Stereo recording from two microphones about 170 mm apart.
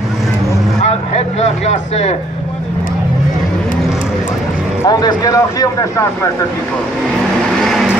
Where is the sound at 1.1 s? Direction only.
40° left (ahead or behind).